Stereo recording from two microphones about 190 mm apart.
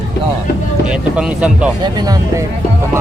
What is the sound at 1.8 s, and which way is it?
Speech, 20° right (ahead or behind).